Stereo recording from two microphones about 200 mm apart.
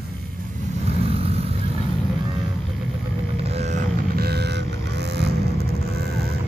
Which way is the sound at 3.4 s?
30° right (ahead or behind).